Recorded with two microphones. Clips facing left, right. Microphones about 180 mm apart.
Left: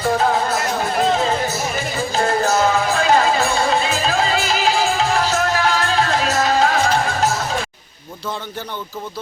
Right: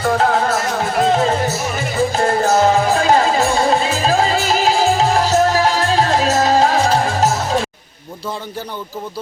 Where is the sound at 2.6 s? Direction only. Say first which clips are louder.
Right 3 dB; 40° right (ahead or behind).